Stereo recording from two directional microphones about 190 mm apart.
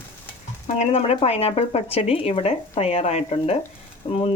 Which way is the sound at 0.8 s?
35° left (ahead or behind).